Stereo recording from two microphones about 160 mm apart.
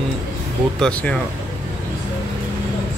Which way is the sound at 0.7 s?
5° left (ahead or behind).